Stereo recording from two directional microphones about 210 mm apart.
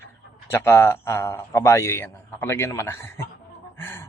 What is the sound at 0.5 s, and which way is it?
A man's voice, 15° left (ahead or behind).